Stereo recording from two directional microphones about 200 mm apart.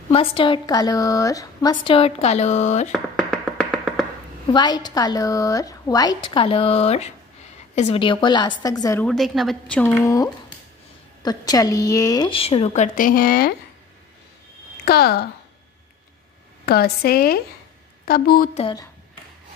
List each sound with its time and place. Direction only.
0.1 s a woman's voice: 30° left (ahead or behind)
2.9 s music: centre (ahead or behind)
4.5 s a woman's voice: 20° left (ahead or behind)
9.0 s a woman's voice: centre (ahead or behind)
10.0 s a woman's voice: 15° left (ahead or behind); by 13.6 s 50° left (ahead or behind)
14.9 s a woman's voice: 50° left (ahead or behind)
16.6 s a woman's voice: 55° left (ahead or behind)
18.6 s a woman's voice: 25° left (ahead or behind)